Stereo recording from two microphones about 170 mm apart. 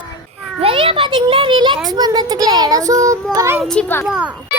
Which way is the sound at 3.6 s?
5° left (ahead or behind).